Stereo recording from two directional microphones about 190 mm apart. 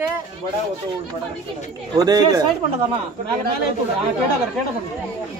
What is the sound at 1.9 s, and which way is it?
Speech, 20° right (ahead or behind).